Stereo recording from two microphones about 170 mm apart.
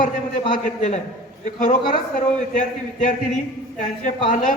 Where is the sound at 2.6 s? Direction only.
50° left (ahead or behind).